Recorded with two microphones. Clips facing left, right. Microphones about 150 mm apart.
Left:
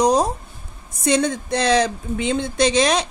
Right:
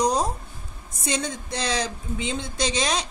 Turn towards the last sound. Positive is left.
turn(degrees=65)  # may be behind; listen again after turning